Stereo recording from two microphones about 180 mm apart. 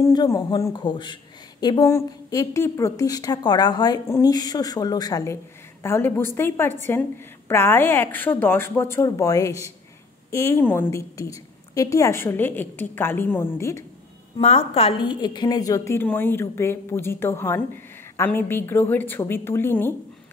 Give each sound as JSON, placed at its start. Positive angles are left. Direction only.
{"t": 0.0, "sound": "a woman's voice", "side_deg": 20}
{"t": 14.4, "sound": "a woman's voice", "side_deg": 35}